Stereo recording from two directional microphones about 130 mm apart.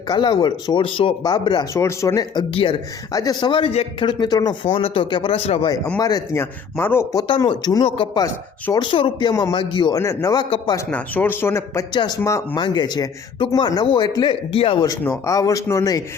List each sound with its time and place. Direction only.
0.1 s a man's voice: 35° left (ahead or behind)
1.7 s a man's voice: 25° left (ahead or behind)
3.5 s speech: 50° left (ahead or behind)
4.0 s a man's voice: 35° left (ahead or behind)
4.6 s speech: 45° left (ahead or behind)
6.0 s a man's voice: 30° left (ahead or behind)
6.4 s speech: 20° left (ahead or behind)
7.3 s a man's voice: 40° left (ahead or behind)
7.8 s a man's voice: 45° left (ahead or behind)
10.0 s a man's voice: 20° left (ahead or behind)
10.9 s speech: 15° left (ahead or behind)
11.9 s a man's voice: 30° left (ahead or behind)
15.3 s a man's voice: 25° left (ahead or behind)